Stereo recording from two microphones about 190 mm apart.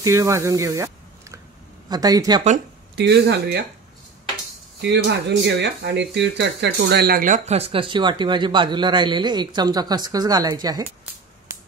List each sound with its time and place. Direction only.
0.0 s speech: 15° right (ahead or behind)
3.0 s speech: 65° right (ahead or behind)
4.8 s speech: 60° right (ahead or behind); by 10.8 s 20° right (ahead or behind)